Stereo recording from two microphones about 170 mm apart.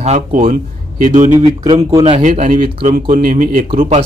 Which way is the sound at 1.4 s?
25° right (ahead or behind).